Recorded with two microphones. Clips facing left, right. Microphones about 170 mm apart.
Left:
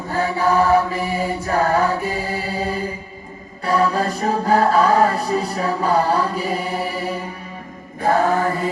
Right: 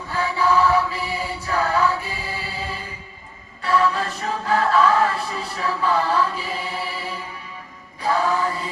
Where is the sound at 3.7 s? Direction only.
40° left (ahead or behind).